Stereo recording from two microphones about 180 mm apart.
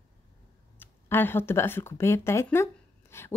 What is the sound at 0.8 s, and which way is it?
Speech, 10° left (ahead or behind).